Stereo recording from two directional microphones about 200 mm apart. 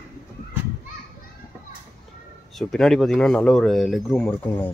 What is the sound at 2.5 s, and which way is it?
Speech, centre (ahead or behind).